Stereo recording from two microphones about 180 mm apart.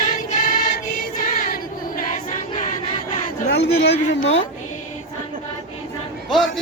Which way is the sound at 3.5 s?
70° left (ahead or behind).